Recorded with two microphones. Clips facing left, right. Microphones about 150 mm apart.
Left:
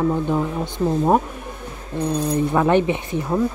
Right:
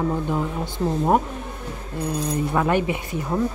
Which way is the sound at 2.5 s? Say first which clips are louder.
Left 4 dB; 20° left (ahead or behind).